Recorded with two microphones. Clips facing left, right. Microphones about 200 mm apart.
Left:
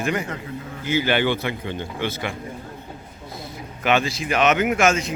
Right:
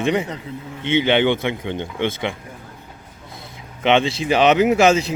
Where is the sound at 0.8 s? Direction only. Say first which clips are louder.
Right 4 dB; 25° right (ahead or behind).